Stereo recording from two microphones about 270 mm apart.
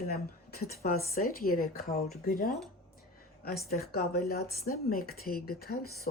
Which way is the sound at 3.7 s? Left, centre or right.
Left.